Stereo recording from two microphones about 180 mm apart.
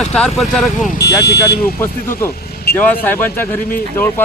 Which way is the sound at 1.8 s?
15° left (ahead or behind).